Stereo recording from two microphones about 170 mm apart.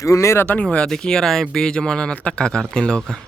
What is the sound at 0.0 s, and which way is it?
Speech, 20° left (ahead or behind).